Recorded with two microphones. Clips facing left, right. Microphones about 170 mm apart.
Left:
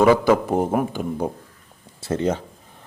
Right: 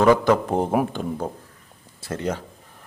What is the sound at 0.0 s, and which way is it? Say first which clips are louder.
Speech: left 1 dB; 10° left (ahead or behind).